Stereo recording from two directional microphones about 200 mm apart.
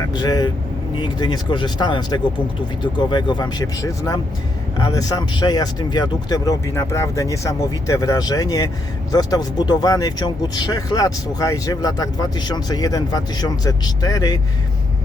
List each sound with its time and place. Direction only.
0.1 s speech: 20° left (ahead or behind)